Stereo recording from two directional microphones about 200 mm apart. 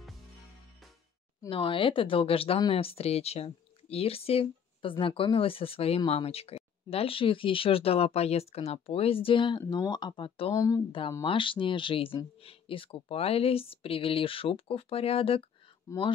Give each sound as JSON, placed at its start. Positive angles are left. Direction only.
{"t": 1.5, "sound": "speech", "side_deg": 25}
{"t": 15.9, "sound": "speech", "side_deg": 15}